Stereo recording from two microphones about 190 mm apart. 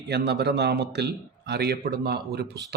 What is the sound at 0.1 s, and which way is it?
A man's voice, 60° right (ahead or behind).